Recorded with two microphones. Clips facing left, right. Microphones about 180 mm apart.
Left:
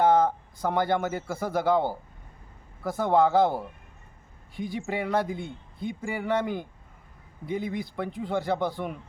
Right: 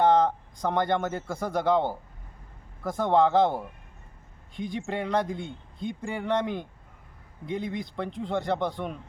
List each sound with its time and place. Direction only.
0.0 s speech: 5° left (ahead or behind)